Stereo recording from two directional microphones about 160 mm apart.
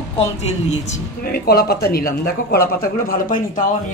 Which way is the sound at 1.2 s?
70° left (ahead or behind).